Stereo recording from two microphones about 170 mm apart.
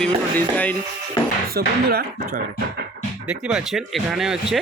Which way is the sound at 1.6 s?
65° right (ahead or behind).